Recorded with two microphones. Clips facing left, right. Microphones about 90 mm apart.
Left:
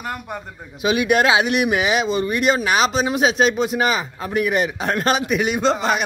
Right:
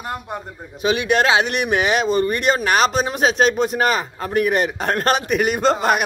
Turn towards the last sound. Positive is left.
turn(degrees=-50)  # may be behind; listen again after turning